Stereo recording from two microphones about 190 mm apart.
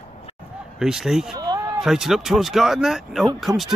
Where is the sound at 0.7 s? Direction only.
5° right (ahead or behind).